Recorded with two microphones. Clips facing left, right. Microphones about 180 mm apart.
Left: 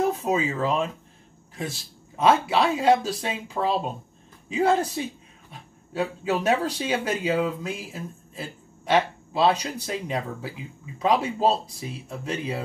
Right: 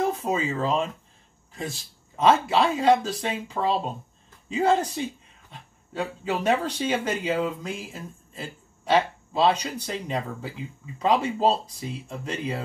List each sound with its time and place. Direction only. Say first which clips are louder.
0.0 s speech: left 2 dB; 5° left (ahead or behind)